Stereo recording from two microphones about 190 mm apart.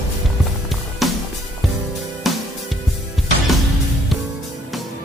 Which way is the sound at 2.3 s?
Centre (ahead or behind).